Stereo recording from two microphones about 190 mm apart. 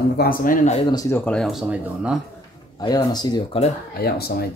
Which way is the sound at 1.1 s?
5° left (ahead or behind).